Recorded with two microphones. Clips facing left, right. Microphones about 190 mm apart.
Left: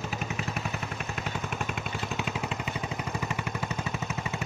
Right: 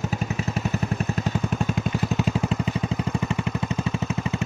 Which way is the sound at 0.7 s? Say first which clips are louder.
Right 9 dB; 35° right (ahead or behind).